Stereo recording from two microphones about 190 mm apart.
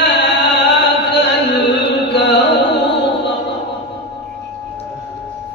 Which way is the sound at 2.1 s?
65° left (ahead or behind).